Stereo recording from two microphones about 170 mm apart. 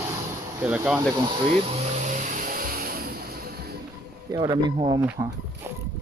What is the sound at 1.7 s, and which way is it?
Vehicle, 45° right (ahead or behind).